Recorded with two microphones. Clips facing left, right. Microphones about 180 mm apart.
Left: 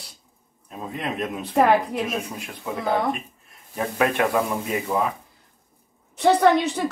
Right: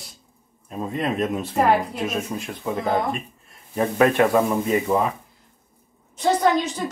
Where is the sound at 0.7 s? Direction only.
Centre (ahead or behind).